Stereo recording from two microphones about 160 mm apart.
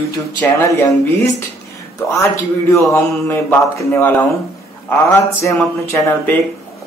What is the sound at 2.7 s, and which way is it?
A man's voice, 15° left (ahead or behind).